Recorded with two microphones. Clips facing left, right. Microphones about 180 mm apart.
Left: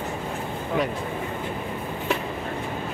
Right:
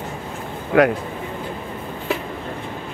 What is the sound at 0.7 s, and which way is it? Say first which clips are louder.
Speech: right 11 dB; 75° right (ahead or behind).